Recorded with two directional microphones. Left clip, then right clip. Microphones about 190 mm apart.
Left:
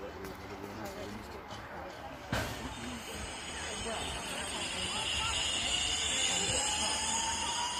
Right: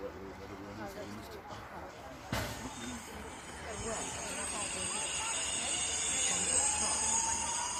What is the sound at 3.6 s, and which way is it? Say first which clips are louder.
Vehicle: left 1 dB; 10° left (ahead or behind).